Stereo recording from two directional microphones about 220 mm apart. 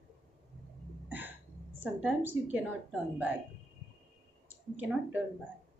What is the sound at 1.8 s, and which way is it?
Speech, 5° right (ahead or behind).